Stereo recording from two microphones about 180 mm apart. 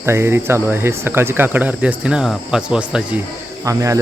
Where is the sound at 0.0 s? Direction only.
15° right (ahead or behind).